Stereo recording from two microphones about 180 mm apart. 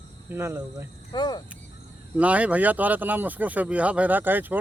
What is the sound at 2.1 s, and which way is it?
Speech, 5° right (ahead or behind).